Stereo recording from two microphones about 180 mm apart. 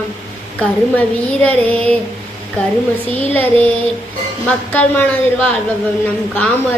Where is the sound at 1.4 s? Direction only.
5° left (ahead or behind).